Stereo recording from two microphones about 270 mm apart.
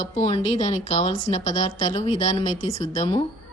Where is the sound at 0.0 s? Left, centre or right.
Left.